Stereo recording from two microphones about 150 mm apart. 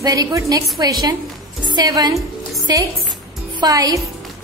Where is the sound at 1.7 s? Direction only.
25° right (ahead or behind).